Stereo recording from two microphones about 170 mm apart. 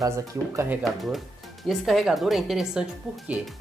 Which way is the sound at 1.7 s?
Centre (ahead or behind).